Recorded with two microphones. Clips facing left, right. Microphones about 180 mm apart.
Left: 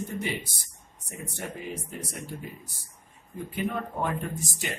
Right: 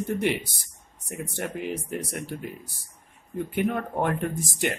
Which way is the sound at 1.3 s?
70° right (ahead or behind).